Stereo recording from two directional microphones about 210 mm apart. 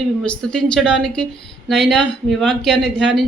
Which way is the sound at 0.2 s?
5° left (ahead or behind).